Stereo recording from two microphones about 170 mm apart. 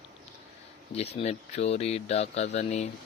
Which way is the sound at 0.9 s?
40° left (ahead or behind).